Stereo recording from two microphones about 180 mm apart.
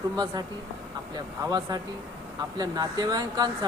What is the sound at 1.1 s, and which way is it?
Speech, 20° right (ahead or behind).